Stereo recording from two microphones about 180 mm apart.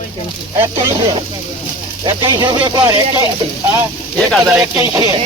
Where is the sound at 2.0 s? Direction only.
25° right (ahead or behind).